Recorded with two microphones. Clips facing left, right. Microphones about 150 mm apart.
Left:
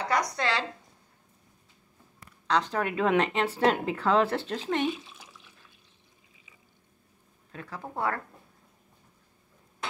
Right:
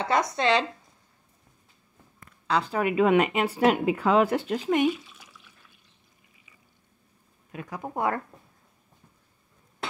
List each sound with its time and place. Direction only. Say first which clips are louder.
0.0 s speech: right 4 dB; 25° right (ahead or behind)
2.4 s speech: right 2 dB; 10° right (ahead or behind)
4.9 s bathtub: even; 25° left (ahead or behind)
7.5 s speech: right 4 dB; 15° right (ahead or behind)